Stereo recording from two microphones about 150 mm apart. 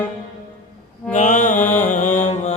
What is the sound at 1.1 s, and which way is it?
Mantra, 55° left (ahead or behind).